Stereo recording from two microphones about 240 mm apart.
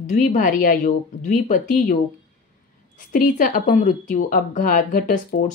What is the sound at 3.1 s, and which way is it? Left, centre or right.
Speech, left.